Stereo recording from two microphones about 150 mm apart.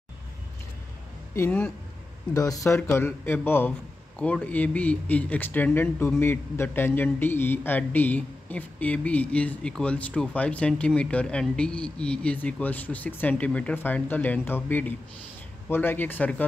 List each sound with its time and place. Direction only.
1.3 s speech: 15° left (ahead or behind)
2.3 s speech: 25° left (ahead or behind)